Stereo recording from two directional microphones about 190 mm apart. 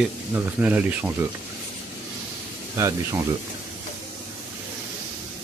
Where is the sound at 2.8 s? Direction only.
15° right (ahead or behind).